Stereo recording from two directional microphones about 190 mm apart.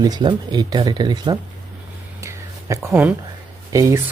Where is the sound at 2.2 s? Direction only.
15° right (ahead or behind).